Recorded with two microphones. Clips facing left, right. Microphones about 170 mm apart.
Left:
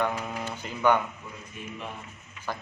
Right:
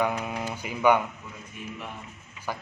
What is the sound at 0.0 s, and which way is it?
A man's voice, 10° right (ahead or behind).